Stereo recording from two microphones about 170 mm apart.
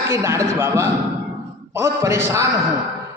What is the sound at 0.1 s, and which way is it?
A man's voice, 15° right (ahead or behind).